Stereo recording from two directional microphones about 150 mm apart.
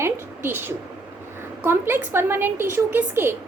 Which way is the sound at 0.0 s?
15° right (ahead or behind).